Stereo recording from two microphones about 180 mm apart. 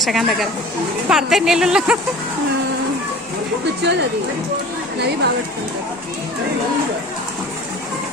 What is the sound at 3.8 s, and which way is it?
Speech, 70° right (ahead or behind).